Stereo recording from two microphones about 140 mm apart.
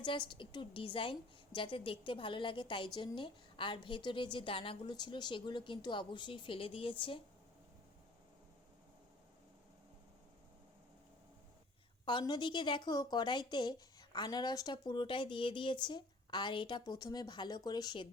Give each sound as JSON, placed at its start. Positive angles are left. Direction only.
{"t": 0.0, "sound": "a woman's voice", "side_deg": 35}
{"t": 12.0, "sound": "a woman's voice", "side_deg": 30}